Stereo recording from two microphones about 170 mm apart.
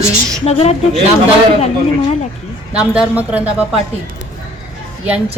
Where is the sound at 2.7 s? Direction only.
5° right (ahead or behind).